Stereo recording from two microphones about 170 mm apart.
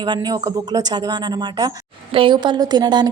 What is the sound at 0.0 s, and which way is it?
A woman's voice, 25° right (ahead or behind).